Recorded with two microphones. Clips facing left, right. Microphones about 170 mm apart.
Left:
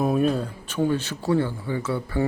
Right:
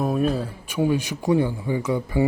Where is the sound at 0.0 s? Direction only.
Centre (ahead or behind).